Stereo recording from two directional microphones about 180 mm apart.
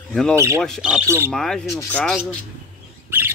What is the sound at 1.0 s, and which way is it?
Speech, 15° right (ahead or behind).